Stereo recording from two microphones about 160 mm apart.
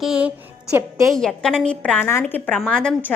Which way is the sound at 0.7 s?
20° right (ahead or behind).